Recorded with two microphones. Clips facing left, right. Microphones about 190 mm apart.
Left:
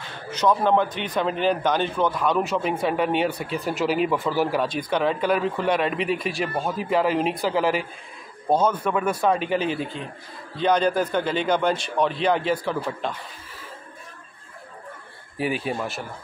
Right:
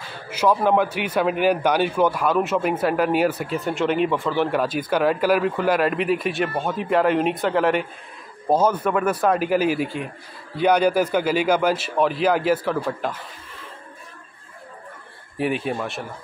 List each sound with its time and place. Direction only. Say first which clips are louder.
0.3 s a man's voice: right 1 dB; 5° right (ahead or behind)
15.3 s a man's voice: right 2 dB; centre (ahead or behind)